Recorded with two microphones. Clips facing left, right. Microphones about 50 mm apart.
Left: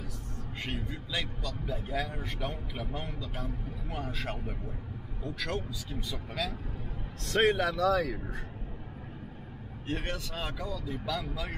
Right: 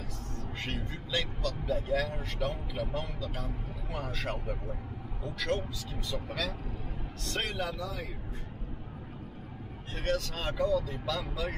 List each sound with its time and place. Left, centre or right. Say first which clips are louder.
0.7 s speech: even; centre
3.9 s speech: right 1 dB; centre
5.5 s speech: right 3 dB; centre
7.3 s speech: left 8 dB; left
7.7 s speech: left 11 dB; left
10.0 s speech: right 4 dB; centre